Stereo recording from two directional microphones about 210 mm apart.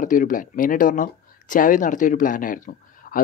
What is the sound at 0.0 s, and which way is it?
Speech, 40° left (ahead or behind).